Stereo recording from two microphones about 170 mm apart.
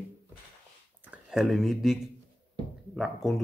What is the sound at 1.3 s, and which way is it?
Speech, centre (ahead or behind).